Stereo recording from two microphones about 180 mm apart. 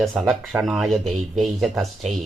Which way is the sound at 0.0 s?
Centre (ahead or behind).